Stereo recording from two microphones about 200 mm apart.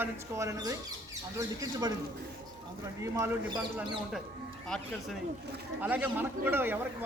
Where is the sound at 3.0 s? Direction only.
15° right (ahead or behind).